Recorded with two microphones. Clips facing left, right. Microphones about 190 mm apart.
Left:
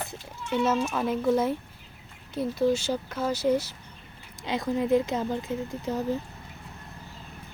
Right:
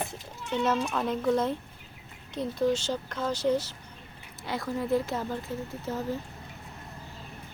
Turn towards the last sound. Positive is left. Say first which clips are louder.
# left 3 dB
turn(degrees=15)  # may be behind; listen again after turning